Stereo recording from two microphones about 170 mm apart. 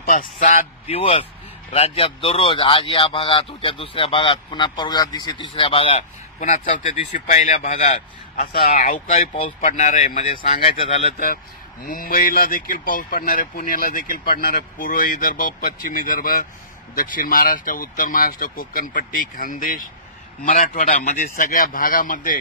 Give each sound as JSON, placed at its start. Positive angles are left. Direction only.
{"t": 0.0, "sound": "speech", "side_deg": 55}
{"t": 0.8, "sound": "speech", "side_deg": 35}
{"t": 11.8, "sound": "speech", "side_deg": 55}